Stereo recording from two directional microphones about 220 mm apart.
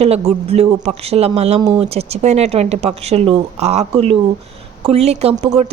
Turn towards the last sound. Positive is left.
turn(degrees=-25)  # may be behind; listen again after turning